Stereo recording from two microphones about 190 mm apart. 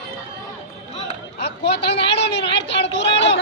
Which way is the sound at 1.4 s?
60° left (ahead or behind).